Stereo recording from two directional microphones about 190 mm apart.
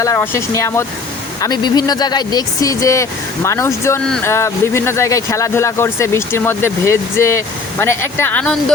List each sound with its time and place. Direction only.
0.0 s speech: 15° left (ahead or behind)